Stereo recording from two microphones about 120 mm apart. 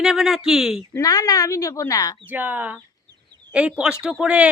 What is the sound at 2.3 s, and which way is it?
Speech, 15° right (ahead or behind).